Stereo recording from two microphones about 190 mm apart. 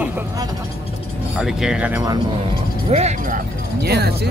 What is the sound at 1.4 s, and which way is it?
Speech, 5° right (ahead or behind).